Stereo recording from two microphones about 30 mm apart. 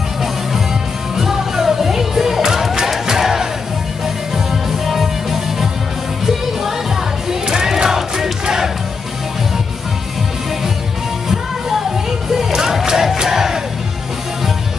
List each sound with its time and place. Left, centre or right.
1.1 s music: centre
4.6 s music: centre
7.4 s battle cry: centre
12.3 s crowd: centre